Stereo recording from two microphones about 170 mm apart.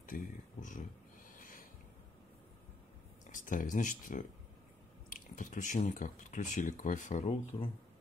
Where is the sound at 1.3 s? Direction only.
55° left (ahead or behind).